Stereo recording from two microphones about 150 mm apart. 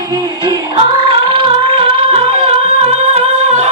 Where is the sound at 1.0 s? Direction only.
35° right (ahead or behind).